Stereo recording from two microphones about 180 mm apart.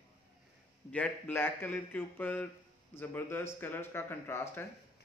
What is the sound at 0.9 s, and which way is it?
Speech, 10° left (ahead or behind).